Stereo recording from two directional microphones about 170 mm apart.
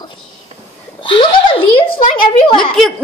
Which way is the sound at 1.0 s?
30° left (ahead or behind).